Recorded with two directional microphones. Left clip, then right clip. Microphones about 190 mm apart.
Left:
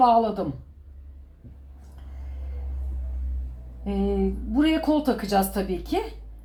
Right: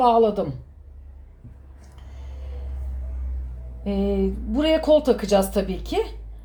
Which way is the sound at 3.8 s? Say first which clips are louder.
Right 2 dB; 25° right (ahead or behind).